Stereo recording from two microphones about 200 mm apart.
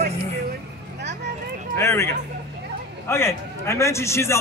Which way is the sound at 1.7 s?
15° left (ahead or behind).